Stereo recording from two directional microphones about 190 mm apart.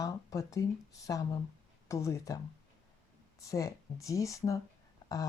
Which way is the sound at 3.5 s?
15° left (ahead or behind).